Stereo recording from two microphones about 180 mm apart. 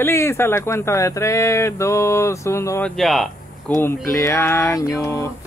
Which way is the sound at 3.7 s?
15° left (ahead or behind).